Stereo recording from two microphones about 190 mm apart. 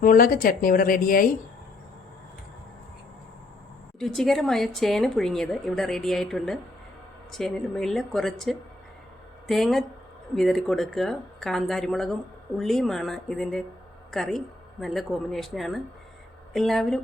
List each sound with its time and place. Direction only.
0.0 s a woman's voice: 45° left (ahead or behind)
4.0 s a woman's voice: centre (ahead or behind)